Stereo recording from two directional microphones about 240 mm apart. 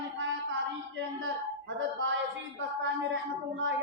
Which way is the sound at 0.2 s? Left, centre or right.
Right.